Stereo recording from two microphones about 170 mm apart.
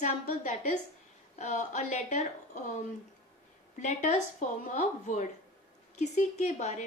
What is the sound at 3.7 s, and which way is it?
A woman's voice, 45° left (ahead or behind).